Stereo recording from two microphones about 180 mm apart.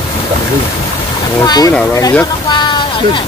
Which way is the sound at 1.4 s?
20° left (ahead or behind).